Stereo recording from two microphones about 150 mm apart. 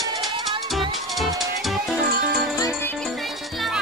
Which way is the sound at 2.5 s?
20° left (ahead or behind).